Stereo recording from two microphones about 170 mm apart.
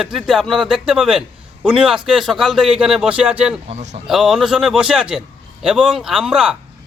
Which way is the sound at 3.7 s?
40° right (ahead or behind).